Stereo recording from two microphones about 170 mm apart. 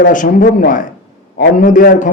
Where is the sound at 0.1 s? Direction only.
50° left (ahead or behind).